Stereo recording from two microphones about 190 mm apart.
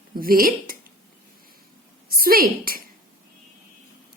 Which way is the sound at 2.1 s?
50° right (ahead or behind).